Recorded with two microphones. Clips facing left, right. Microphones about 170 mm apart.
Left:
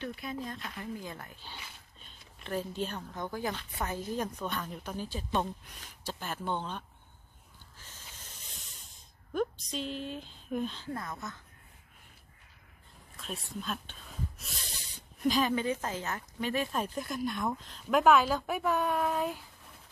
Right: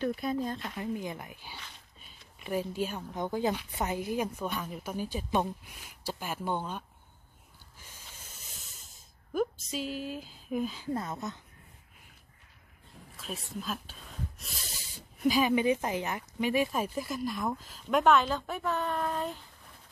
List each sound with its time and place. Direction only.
0.0 s speech: 40° right (ahead or behind)
0.7 s a woman's voice: 20° right (ahead or behind)
2.0 s a sound: 5° right (ahead or behind)
3.2 s a woman's voice: 20° right (ahead or behind)
7.8 s snake: 10° right (ahead or behind)
10.9 s speech: 20° right (ahead or behind)
13.2 s speech: 5° right (ahead or behind)